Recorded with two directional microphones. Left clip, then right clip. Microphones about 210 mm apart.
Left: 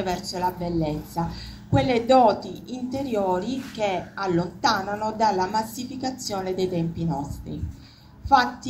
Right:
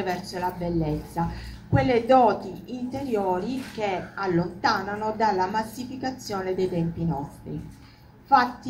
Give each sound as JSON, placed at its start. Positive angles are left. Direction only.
{"t": 0.0, "sound": "a woman's voice", "side_deg": 45}